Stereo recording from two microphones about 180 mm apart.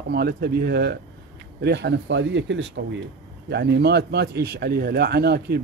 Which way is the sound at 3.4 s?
70° right (ahead or behind).